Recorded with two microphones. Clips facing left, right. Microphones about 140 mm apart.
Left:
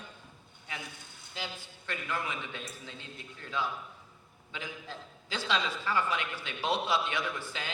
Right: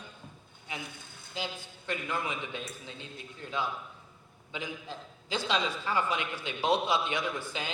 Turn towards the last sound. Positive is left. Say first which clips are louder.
# right 2 dB
turn(degrees=-15)  # may be behind; listen again after turning